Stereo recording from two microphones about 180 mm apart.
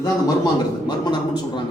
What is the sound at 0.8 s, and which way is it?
Speech, 25° left (ahead or behind).